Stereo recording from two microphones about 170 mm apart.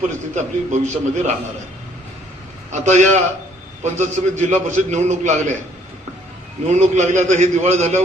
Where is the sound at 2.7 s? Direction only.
45° right (ahead or behind).